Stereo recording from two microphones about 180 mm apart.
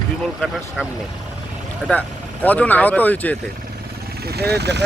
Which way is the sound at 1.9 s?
10° left (ahead or behind).